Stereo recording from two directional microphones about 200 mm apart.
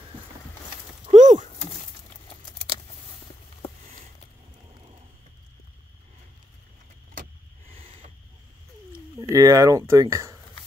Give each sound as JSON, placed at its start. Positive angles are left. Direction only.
{"t": 1.1, "sound": "a sound", "side_deg": -35}
{"t": 7.7, "sound": "owl", "side_deg": -25}
{"t": 8.9, "sound": "speech", "side_deg": -15}